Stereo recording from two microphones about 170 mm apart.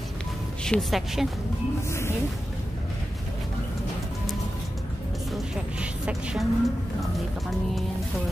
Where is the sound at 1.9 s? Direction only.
15° left (ahead or behind).